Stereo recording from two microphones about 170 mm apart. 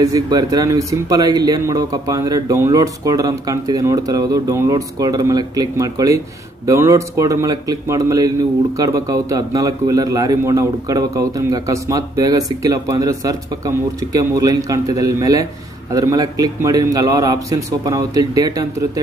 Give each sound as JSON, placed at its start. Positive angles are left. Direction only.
{"t": 0.0, "sound": "speech", "side_deg": -20}